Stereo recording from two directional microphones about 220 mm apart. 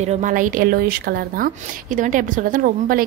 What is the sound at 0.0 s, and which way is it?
A woman's voice, 35° right (ahead or behind).